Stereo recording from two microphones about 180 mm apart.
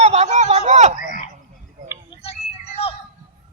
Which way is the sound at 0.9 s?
45° left (ahead or behind).